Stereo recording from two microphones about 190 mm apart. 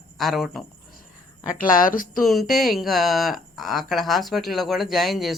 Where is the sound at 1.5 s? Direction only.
45° left (ahead or behind).